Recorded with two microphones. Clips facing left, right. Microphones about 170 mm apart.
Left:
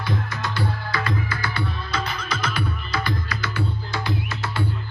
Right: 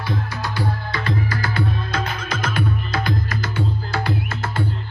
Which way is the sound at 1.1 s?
40° right (ahead or behind).